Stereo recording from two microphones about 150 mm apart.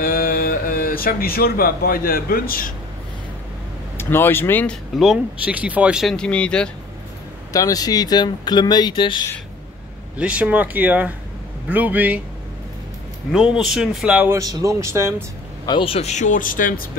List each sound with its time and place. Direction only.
0.0 s speech: 75° left (ahead or behind)
4.0 s speech: 15° left (ahead or behind)
4.9 s speech: 5° right (ahead or behind)
7.5 s speech: 25° left (ahead or behind)
10.1 s speech: 10° right (ahead or behind)
13.3 s speech: 5° right (ahead or behind)
14.3 s speech: 20° right (ahead or behind)
15.6 s speech: 35° left (ahead or behind); by 16.8 s 65° left (ahead or behind)